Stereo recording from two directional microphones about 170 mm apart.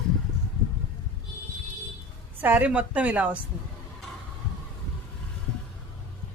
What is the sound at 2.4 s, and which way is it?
Speech, 10° right (ahead or behind).